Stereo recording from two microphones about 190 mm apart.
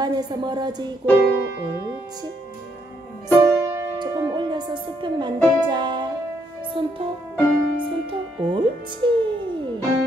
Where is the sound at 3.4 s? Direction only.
15° right (ahead or behind).